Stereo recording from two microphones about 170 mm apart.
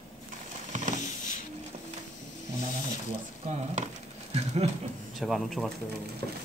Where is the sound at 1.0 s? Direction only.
50° left (ahead or behind).